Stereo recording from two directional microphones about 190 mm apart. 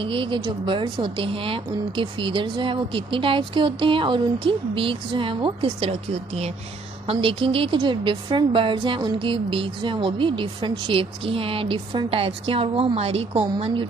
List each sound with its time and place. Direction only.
0.0 s a woman's voice: 25° right (ahead or behind)